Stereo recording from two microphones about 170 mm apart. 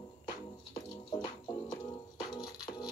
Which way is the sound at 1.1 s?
25° left (ahead or behind).